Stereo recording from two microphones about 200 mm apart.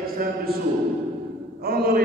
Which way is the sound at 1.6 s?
50° right (ahead or behind).